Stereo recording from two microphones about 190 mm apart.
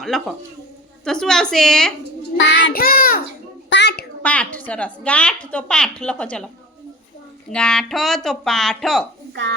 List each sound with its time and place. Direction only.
0.0 s a woman's voice: centre (ahead or behind)
2.6 s child singing: 50° left (ahead or behind)
3.7 s a sound: 65° left (ahead or behind)
4.2 s a woman's voice: 5° left (ahead or behind)
7.5 s a woman's voice: 5° left (ahead or behind)
9.3 s speech: 70° right (ahead or behind)